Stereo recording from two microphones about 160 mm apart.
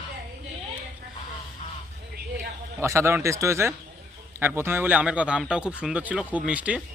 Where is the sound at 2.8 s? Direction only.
15° right (ahead or behind).